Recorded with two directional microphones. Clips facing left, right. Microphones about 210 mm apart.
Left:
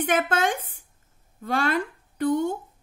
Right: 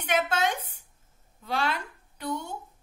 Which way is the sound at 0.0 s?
50° left (ahead or behind).